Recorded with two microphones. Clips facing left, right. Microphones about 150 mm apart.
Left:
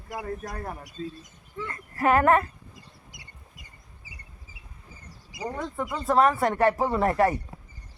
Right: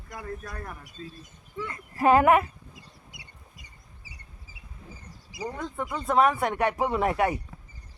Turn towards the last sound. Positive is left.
turn(degrees=-5)  # may be behind; listen again after turning